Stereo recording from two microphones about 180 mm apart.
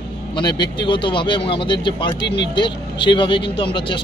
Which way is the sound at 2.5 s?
25° left (ahead or behind).